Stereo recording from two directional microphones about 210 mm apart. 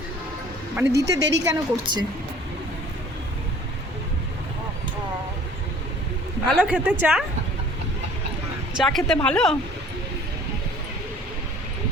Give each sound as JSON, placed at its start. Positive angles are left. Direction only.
{"t": 0.8, "sound": "a woman's voice", "side_deg": -15}
{"t": 1.2, "sound": "speech", "side_deg": -60}
{"t": 1.5, "sound": "a woman's voice", "side_deg": -15}
{"t": 6.5, "sound": "a woman's voice", "side_deg": -5}
{"t": 8.8, "sound": "a woman's voice", "side_deg": 0}